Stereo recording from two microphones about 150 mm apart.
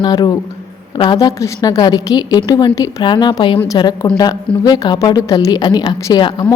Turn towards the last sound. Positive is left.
turn(degrees=30)  # may be behind; listen again after turning